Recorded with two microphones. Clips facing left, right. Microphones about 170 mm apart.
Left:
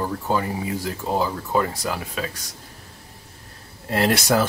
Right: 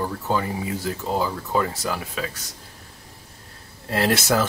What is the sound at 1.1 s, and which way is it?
Speech, 15° left (ahead or behind).